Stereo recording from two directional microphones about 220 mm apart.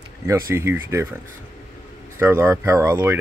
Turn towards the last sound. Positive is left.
turn(degrees=-10)  # may be behind; listen again after turning